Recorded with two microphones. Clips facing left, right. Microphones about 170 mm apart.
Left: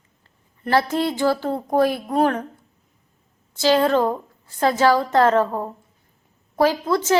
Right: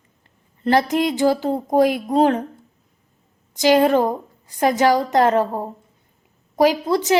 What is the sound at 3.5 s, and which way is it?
A woman's voice, 15° right (ahead or behind).